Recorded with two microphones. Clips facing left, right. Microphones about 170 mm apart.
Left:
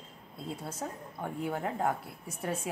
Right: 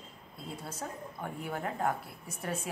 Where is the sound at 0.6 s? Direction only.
20° left (ahead or behind).